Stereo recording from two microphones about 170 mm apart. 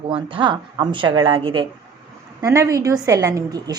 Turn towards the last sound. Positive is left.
turn(degrees=-20)  # may be behind; listen again after turning